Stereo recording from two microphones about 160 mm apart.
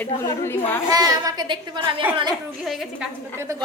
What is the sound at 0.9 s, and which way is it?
A woman's voice, 20° right (ahead or behind).